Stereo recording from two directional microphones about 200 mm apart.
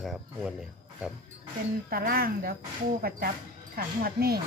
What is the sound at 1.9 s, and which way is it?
Speech, 50° right (ahead or behind).